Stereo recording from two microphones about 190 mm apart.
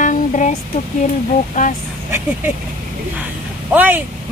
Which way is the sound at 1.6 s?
40° left (ahead or behind).